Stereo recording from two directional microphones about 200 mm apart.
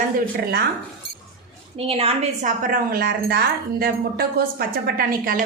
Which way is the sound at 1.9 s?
30° right (ahead or behind).